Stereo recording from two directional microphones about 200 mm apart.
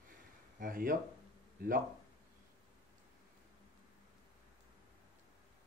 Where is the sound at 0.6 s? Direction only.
45° right (ahead or behind).